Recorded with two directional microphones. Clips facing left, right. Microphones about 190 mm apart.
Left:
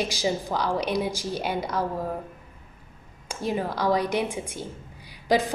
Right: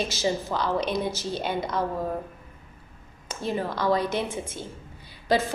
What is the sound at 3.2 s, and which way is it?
A woman's voice, 10° left (ahead or behind).